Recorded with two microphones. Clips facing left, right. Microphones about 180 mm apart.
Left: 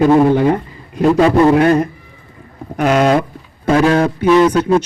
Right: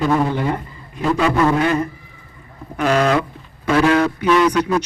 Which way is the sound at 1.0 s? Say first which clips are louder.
Left 6 dB; 40° left (ahead or behind).